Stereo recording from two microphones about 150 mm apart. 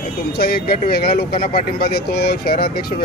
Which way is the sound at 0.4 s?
90° left.